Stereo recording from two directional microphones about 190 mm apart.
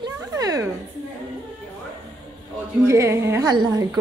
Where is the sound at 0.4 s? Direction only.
15° right (ahead or behind).